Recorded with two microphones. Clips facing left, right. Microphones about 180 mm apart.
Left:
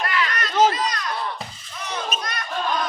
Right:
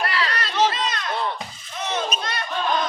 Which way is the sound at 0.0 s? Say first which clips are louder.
Even; 35° right (ahead or behind).